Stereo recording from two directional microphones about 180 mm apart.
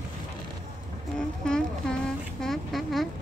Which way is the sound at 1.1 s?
5° left (ahead or behind).